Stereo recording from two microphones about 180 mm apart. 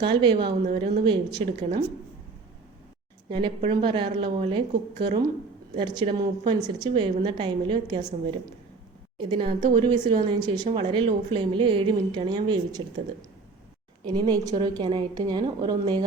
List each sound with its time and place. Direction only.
0.0 s a woman's voice: 25° right (ahead or behind)
0.4 s a woman's voice: 60° right (ahead or behind)
0.8 s a woman's voice: 25° right (ahead or behind)
3.2 s a woman's voice: 25° right (ahead or behind)
9.1 s a woman's voice: 25° right (ahead or behind)
14.0 s a woman's voice: 20° right (ahead or behind)